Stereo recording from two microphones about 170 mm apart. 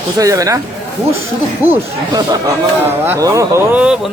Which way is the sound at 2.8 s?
15° right (ahead or behind).